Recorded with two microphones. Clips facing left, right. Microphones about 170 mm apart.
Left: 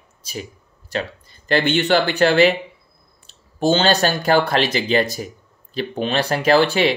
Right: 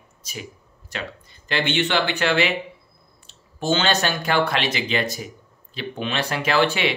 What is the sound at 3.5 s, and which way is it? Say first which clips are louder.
Speech: left 5 dB; 35° left (ahead or behind).